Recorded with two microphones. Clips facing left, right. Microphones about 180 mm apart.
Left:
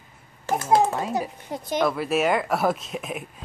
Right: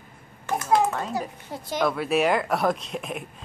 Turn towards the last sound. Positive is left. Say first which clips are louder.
# even
turn(degrees=0)  # may be behind; listen again after turning